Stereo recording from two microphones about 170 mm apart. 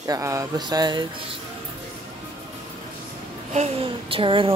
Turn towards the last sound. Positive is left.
turn(degrees=-30)  # may be behind; listen again after turning